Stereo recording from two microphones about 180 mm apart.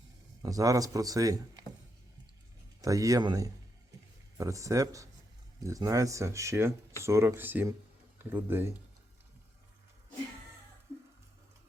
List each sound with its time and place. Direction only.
0.4 s speech: 20° right (ahead or behind)
2.8 s speech: 20° right (ahead or behind)